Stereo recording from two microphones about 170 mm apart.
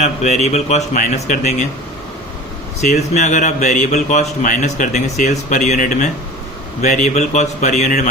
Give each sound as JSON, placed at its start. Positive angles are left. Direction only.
{"t": 0.0, "sound": "a man's voice", "side_deg": 40}
{"t": 2.8, "sound": "a man's voice", "side_deg": 45}